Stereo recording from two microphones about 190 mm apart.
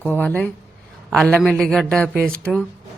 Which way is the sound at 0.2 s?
5° left (ahead or behind).